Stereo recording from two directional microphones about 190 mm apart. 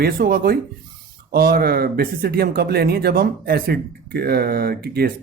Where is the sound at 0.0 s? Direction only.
50° right (ahead or behind).